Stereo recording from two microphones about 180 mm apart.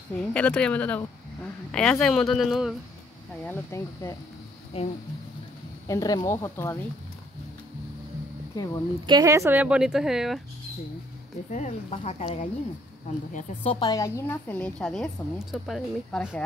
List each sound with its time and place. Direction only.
0.1 s speech: 5° left (ahead or behind)
3.4 s a woman's voice: 15° left (ahead or behind)
4.7 s speech: 30° left (ahead or behind)
5.9 s a woman's voice: 20° left (ahead or behind)
9.0 s a woman's voice: 20° right (ahead or behind); by 10.4 s centre (ahead or behind)
11.5 s speech: 40° left (ahead or behind)
13.7 s a woman's voice: 25° left (ahead or behind); by 16.4 s 5° left (ahead or behind)